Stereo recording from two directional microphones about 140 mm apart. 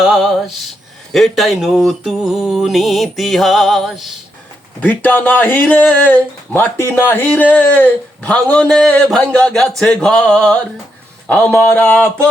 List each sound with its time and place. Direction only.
0.0 s mantra: 5° right (ahead or behind)
4.8 s a man's voice: 10° left (ahead or behind)
9.0 s mantra: 5° left (ahead or behind)
11.3 s a man's voice: 5° left (ahead or behind)